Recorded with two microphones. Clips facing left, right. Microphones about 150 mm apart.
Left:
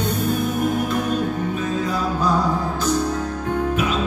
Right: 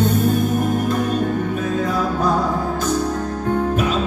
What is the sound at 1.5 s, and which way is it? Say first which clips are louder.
Music: right 2 dB; 55° right (ahead or behind).